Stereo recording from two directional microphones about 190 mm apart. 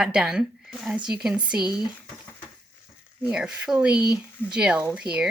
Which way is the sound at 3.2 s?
5° right (ahead or behind).